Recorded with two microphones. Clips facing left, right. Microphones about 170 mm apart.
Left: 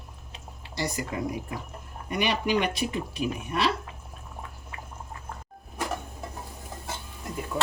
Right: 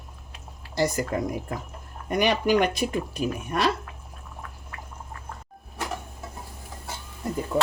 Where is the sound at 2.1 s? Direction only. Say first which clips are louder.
Right 4 dB; 45° right (ahead or behind).